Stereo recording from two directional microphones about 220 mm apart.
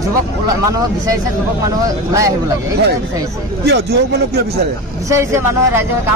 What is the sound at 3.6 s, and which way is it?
Speech, 50° right (ahead or behind).